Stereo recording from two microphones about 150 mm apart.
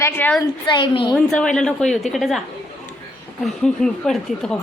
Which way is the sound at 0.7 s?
35° left (ahead or behind).